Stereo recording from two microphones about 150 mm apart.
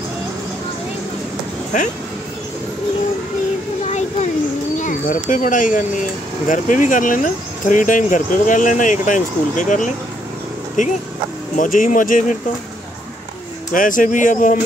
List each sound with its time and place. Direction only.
1.7 s speech: 55° left (ahead or behind)
3.8 s a sound: 50° left (ahead or behind)
4.7 s speech: 60° left (ahead or behind)
13.7 s speech: 60° left (ahead or behind)